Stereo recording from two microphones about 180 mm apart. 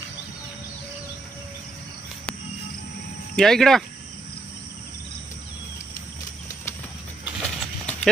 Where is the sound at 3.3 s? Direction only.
Centre (ahead or behind).